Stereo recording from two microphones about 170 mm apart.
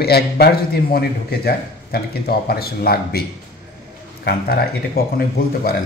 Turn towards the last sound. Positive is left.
turn(degrees=65)  # may be behind; listen again after turning